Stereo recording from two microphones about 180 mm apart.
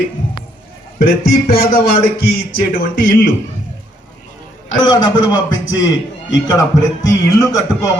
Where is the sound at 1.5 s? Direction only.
55° left (ahead or behind).